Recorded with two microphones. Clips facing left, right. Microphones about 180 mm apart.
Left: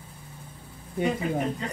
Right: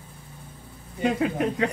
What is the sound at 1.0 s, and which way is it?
Speech, 85° right.